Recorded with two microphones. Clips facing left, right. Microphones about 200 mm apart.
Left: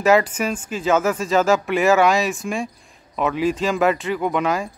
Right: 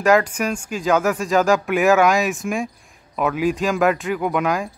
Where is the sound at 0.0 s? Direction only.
5° left (ahead or behind).